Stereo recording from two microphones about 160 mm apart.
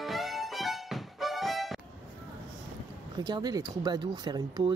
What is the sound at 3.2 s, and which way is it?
Speech, 25° right (ahead or behind).